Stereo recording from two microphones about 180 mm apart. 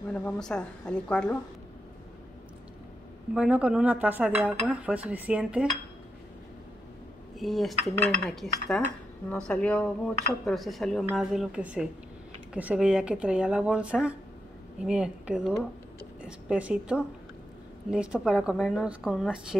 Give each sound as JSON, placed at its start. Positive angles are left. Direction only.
{"t": 0.1, "sound": "speech", "side_deg": 5}
{"t": 3.3, "sound": "speech", "side_deg": -5}
{"t": 7.3, "sound": "speech", "side_deg": 0}